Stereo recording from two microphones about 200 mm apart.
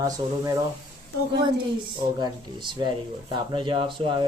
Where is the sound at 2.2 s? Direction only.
20° right (ahead or behind).